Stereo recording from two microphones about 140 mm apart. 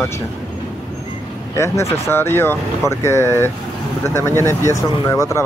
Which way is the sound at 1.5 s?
20° left (ahead or behind).